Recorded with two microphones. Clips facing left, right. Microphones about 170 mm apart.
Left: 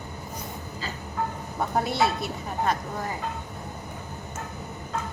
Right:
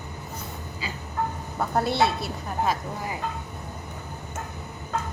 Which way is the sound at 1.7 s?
Centre (ahead or behind).